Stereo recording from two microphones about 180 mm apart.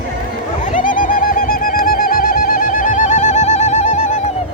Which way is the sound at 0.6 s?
45° left (ahead or behind).